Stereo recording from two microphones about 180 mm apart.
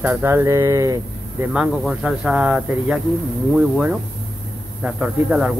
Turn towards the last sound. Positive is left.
turn(degrees=-5)  # may be behind; listen again after turning